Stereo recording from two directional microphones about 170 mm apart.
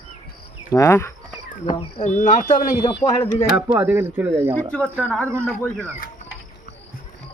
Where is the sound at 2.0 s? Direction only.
45° left (ahead or behind).